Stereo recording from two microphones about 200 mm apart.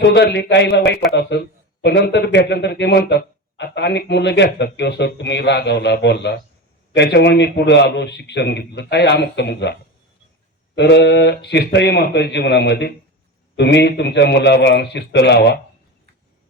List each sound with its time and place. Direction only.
0.0 s a man's voice: 55° left (ahead or behind)
10.8 s a man's voice: 60° left (ahead or behind)